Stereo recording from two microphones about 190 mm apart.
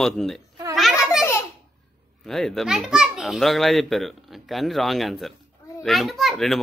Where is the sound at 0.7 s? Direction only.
Centre (ahead or behind).